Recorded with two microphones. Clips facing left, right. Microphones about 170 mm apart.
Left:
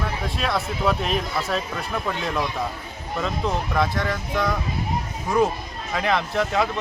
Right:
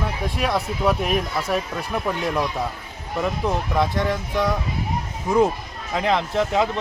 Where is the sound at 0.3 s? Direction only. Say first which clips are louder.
Right 2 dB; 15° right (ahead or behind).